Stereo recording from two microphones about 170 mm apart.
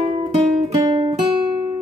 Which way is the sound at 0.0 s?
35° right (ahead or behind).